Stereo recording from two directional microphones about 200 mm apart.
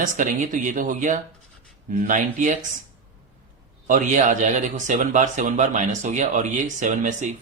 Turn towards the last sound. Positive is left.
turn(degrees=-35)  # may be behind; listen again after turning